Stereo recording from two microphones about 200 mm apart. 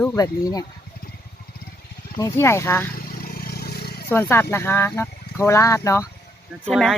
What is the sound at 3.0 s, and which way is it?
Vehicle, 45° left (ahead or behind).